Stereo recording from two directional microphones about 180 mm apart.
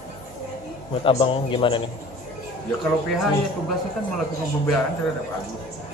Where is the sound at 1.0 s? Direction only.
30° left (ahead or behind).